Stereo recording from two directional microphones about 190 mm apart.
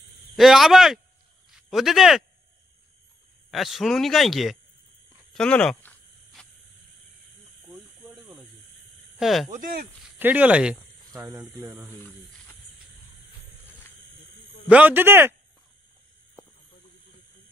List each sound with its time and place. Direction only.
0.4 s speech: centre (ahead or behind)
3.5 s speech: centre (ahead or behind)
5.3 s a sound: 5° left (ahead or behind)
8.1 s snake: 5° right (ahead or behind)
9.2 s speech: centre (ahead or behind)
9.5 s speech: 45° right (ahead or behind)
10.0 s speech: 10° right (ahead or behind)
11.9 s speech: 10° left (ahead or behind)
13.7 s cricket: 10° left (ahead or behind)
14.7 s speech: 10° right (ahead or behind)